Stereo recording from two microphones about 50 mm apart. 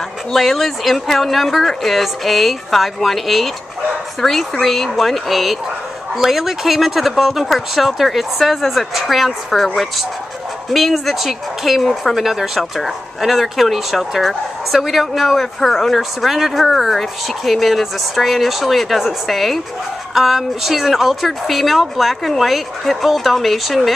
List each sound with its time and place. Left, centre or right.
0.3 s speech: centre
10.7 s speech: centre